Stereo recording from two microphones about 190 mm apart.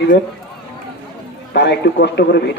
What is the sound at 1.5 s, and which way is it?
Speech, 65° left (ahead or behind).